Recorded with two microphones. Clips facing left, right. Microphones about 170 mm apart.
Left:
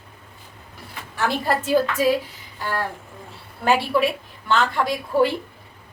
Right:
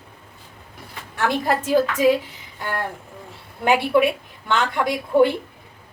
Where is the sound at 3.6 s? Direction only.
15° right (ahead or behind).